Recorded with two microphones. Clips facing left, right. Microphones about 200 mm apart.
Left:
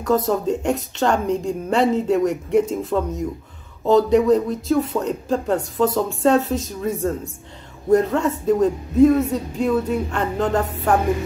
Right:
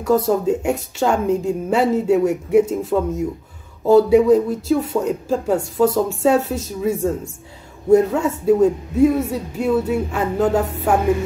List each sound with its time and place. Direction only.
0.0 s a woman's voice: 10° right (ahead or behind)